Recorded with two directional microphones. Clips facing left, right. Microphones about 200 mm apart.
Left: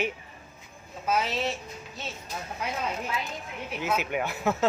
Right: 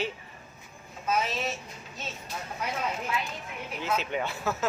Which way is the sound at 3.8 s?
10° left (ahead or behind).